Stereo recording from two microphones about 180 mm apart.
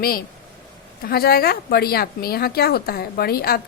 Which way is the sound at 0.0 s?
55° left (ahead or behind).